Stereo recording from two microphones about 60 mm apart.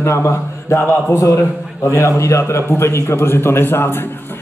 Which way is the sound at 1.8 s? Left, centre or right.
Left.